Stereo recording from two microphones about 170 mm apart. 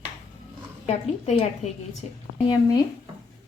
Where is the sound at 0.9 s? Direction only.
40° left (ahead or behind).